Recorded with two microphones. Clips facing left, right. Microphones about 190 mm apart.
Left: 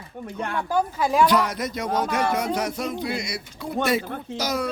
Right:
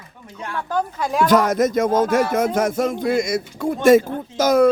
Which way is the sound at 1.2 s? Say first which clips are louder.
Right 6 dB; 45° right (ahead or behind).